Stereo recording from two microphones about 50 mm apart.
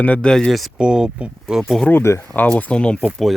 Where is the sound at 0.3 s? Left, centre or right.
Centre.